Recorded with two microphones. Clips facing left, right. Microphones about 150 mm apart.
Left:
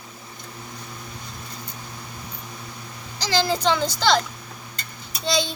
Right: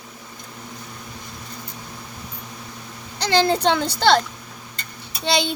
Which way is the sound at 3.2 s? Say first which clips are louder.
Right 4 dB; 60° right (ahead or behind).